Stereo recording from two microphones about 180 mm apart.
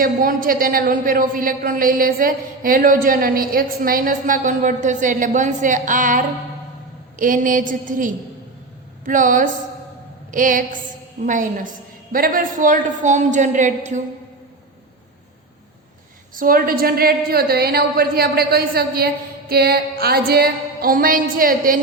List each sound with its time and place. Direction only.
0.0 s a woman's voice: 50° right (ahead or behind)
16.3 s a woman's voice: 50° right (ahead or behind)